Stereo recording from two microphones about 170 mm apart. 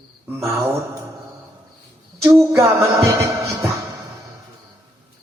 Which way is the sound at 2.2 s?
15° right (ahead or behind).